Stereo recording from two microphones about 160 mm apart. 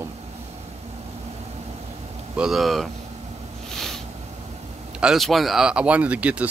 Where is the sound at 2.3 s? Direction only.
5° right (ahead or behind).